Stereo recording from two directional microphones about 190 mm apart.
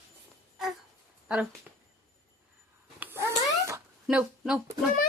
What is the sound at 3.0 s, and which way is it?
Cat, 15° right (ahead or behind).